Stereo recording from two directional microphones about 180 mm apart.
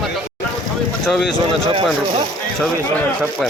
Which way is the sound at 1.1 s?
Centre (ahead or behind).